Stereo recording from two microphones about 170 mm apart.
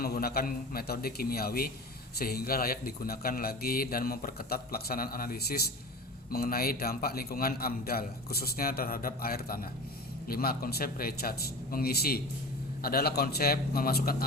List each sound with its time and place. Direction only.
0.0 s a man's voice: 65° left (ahead or behind)